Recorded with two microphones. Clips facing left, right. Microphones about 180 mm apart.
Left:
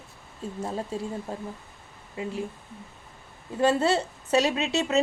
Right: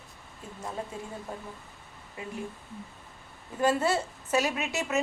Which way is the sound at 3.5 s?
30° left (ahead or behind).